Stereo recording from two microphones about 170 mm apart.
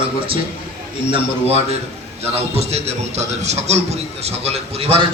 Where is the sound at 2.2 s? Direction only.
35° right (ahead or behind).